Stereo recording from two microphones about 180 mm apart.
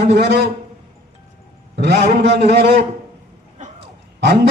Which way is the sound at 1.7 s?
65° right (ahead or behind).